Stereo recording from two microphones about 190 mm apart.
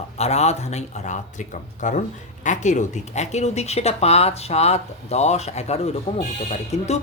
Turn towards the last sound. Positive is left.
turn(degrees=35)  # may be behind; listen again after turning